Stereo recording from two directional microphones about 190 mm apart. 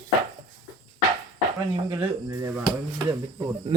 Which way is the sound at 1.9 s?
15° right (ahead or behind).